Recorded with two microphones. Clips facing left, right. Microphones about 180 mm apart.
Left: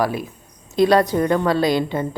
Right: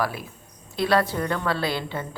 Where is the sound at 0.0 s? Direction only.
20° left (ahead or behind).